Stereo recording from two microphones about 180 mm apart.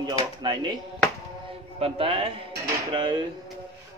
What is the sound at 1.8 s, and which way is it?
Speech, 30° right (ahead or behind).